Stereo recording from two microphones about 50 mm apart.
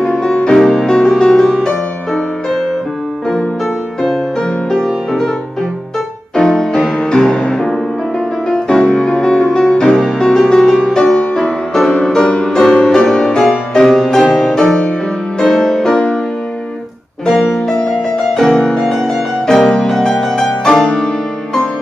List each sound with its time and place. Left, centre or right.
0.0 s music: centre
4.4 s music: centre
6.3 s music: centre
17.3 s music: centre